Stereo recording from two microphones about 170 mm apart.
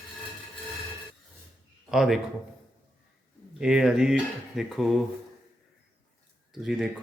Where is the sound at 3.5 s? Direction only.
5° right (ahead or behind).